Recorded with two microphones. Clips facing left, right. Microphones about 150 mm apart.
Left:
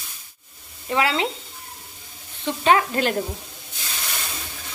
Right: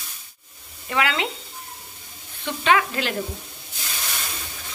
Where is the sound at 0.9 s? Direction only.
30° left (ahead or behind).